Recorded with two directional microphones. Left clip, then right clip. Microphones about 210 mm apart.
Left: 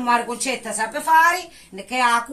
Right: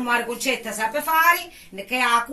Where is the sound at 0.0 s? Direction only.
15° left (ahead or behind).